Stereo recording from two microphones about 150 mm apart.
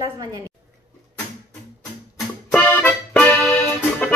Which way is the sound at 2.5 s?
10° left (ahead or behind).